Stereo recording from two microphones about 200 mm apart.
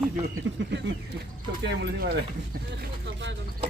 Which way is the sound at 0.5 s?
65° right (ahead or behind).